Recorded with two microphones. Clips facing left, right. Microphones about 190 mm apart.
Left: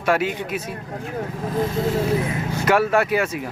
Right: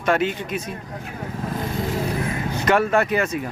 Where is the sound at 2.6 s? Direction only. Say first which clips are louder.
Even; 5° left (ahead or behind).